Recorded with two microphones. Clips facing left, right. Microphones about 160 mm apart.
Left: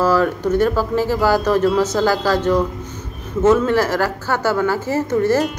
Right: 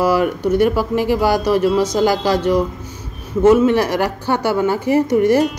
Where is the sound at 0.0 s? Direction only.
10° right (ahead or behind).